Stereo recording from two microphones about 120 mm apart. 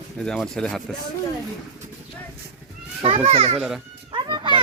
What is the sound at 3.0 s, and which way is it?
Speech, 60° right (ahead or behind).